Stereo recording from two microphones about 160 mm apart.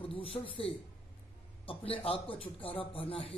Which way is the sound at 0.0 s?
35° left (ahead or behind).